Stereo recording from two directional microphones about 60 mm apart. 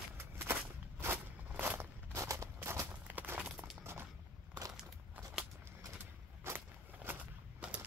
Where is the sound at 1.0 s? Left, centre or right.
Right.